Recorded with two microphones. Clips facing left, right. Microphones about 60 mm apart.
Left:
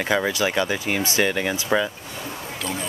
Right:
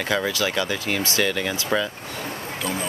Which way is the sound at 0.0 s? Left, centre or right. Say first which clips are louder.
Left 2 dB; left.